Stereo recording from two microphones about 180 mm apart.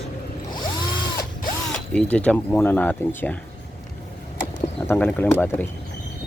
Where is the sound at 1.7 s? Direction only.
5° left (ahead or behind).